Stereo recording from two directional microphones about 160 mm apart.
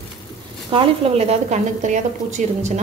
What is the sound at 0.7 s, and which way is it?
A woman's voice, 35° right (ahead or behind).